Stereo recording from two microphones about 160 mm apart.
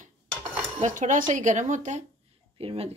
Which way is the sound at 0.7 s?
50° right (ahead or behind).